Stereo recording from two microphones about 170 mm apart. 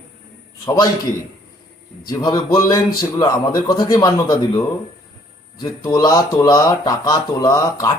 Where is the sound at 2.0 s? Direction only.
20° left (ahead or behind).